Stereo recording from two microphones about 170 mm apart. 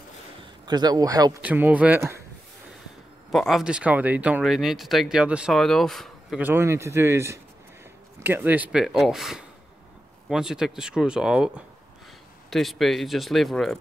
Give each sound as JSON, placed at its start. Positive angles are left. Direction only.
{"t": 0.7, "sound": "speech", "side_deg": -25}
{"t": 1.4, "sound": "a man's voice", "side_deg": -10}
{"t": 3.3, "sound": "speech", "side_deg": 0}
{"t": 6.4, "sound": "a man's voice", "side_deg": -15}